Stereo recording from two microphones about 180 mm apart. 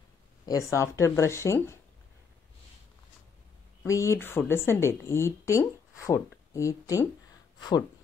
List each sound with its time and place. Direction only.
0.5 s speech: 15° left (ahead or behind)
3.8 s speech: 15° left (ahead or behind)